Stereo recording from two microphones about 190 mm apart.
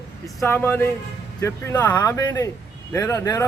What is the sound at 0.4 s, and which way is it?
A man's voice, 10° left (ahead or behind).